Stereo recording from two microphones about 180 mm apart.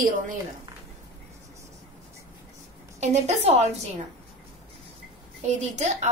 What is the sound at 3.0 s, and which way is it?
Speech, 40° right (ahead or behind).